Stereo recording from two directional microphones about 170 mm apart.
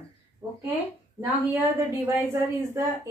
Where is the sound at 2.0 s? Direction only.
15° right (ahead or behind).